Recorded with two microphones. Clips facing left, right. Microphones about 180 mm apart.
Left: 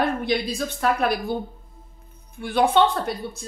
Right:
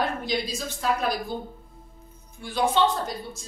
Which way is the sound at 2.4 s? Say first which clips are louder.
Left 4 dB; 60° left (ahead or behind).